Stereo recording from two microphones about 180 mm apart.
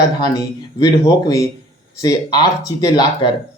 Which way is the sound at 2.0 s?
20° left (ahead or behind).